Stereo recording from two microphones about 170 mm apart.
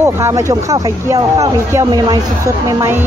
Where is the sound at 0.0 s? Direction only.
15° right (ahead or behind).